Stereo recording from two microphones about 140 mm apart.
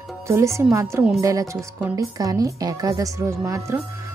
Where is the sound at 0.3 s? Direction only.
20° right (ahead or behind).